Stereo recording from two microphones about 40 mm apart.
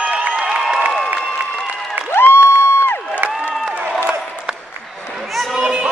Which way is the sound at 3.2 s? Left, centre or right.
Right.